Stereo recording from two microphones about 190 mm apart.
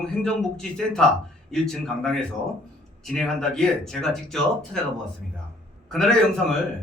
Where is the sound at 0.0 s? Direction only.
5° left (ahead or behind).